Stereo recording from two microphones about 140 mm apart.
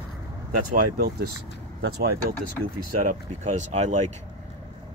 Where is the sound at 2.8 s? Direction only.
65° right (ahead or behind).